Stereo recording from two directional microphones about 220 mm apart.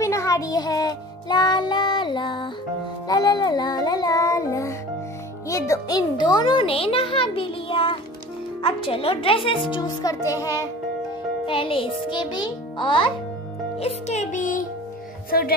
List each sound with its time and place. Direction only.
0.0 s music: 15° left (ahead or behind)
5.5 s speech: 15° left (ahead or behind)
11.4 s speech: 25° left (ahead or behind)
13.7 s music: 30° left (ahead or behind)